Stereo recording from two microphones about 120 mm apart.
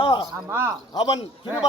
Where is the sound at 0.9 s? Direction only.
35° left (ahead or behind).